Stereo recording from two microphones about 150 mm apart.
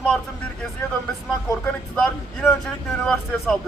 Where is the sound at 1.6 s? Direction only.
5° left (ahead or behind).